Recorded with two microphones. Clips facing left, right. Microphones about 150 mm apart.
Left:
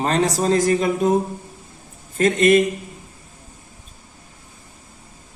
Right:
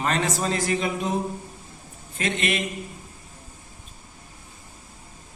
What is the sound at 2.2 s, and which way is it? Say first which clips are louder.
Speech: left 12 dB; 45° left (ahead or behind).